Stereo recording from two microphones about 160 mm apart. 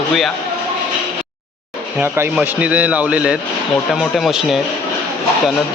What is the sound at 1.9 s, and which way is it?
Speech, 10° right (ahead or behind).